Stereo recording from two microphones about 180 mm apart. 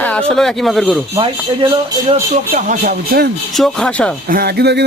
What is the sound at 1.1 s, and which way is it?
Speech, 25° right (ahead or behind).